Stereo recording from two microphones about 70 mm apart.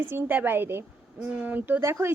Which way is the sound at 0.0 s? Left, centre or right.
Right.